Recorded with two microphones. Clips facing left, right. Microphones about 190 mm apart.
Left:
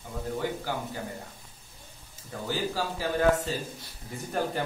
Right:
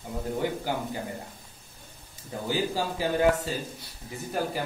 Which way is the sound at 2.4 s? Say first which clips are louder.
Right 2 dB; 15° right (ahead or behind).